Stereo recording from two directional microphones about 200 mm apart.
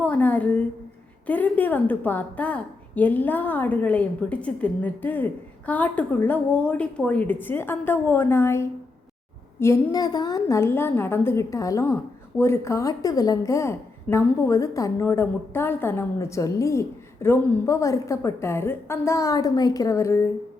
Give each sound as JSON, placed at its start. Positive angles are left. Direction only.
{"t": 0.0, "sound": "a woman's voice", "side_deg": 10}